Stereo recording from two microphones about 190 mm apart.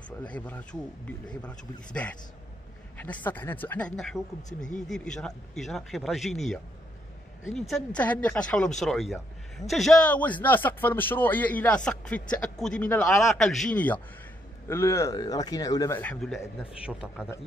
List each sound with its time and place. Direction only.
0.2 s a man's voice: 5° left (ahead or behind)